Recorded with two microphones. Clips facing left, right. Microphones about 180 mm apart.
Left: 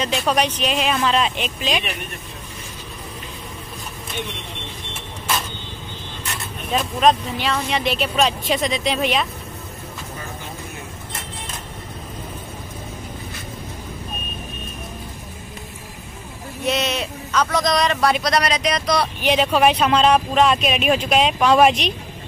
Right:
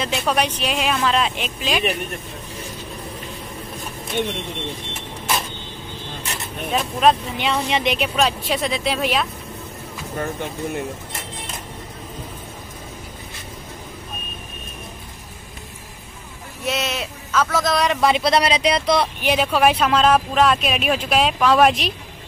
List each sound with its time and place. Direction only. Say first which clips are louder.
0.0 s speech: left 1 dB; centre (ahead or behind)
6.7 s speech: even; 5° right (ahead or behind)
7.3 s speech: right 1 dB; 20° right (ahead or behind); by 9.3 s centre (ahead or behind)
16.6 s speech: left 2 dB; centre (ahead or behind)
18.0 s speech: right 2 dB; 25° right (ahead or behind)
19.2 s speech: left 2 dB; 5° right (ahead or behind)